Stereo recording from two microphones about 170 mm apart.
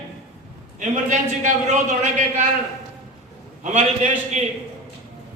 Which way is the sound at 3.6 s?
45° right (ahead or behind).